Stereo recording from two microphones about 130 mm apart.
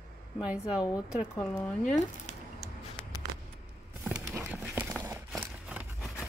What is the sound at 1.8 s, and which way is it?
Speech, 70° left (ahead or behind).